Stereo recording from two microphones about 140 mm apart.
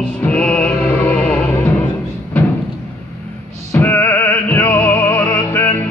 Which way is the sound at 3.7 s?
15° left (ahead or behind).